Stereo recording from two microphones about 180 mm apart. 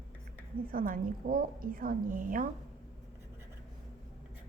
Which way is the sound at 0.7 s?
50° right (ahead or behind).